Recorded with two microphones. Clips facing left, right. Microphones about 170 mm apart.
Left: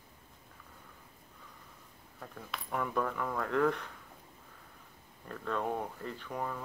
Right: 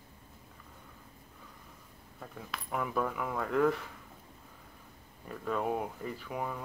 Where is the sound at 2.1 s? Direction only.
5° right (ahead or behind).